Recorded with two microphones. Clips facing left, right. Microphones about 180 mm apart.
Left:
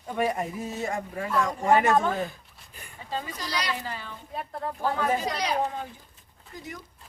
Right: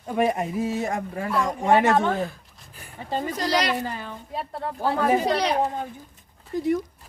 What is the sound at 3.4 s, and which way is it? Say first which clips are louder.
Speech: right 11 dB; 80° right.